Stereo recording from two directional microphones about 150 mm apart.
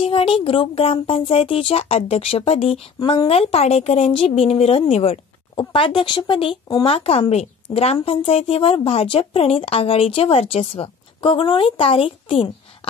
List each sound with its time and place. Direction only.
0.0 s speech: 35° left (ahead or behind)
3.0 s a woman's voice: 25° left (ahead or behind)
3.3 s speech: 40° left (ahead or behind)